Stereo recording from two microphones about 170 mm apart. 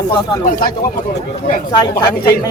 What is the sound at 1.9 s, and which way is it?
Speech, 25° left (ahead or behind).